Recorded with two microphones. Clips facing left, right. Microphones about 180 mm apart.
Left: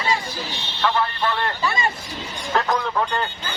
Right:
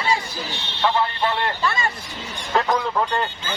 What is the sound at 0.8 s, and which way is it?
Speech, 20° right (ahead or behind).